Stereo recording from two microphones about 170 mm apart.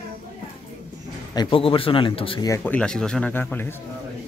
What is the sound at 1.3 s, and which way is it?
Speech, 30° left (ahead or behind).